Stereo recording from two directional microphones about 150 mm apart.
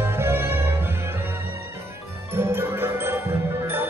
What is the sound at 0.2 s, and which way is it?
Music, 15° right (ahead or behind).